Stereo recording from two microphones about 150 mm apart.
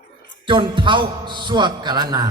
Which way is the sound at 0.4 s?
35° right (ahead or behind).